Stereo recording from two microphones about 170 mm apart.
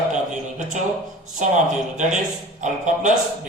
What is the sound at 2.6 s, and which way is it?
Speech, 45° right (ahead or behind).